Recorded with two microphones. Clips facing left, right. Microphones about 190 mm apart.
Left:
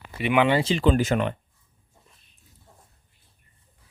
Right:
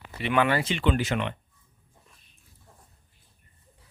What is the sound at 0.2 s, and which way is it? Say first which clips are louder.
Speech: left 3 dB; 15° left (ahead or behind).